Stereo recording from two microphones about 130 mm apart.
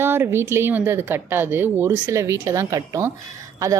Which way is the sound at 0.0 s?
15° right (ahead or behind).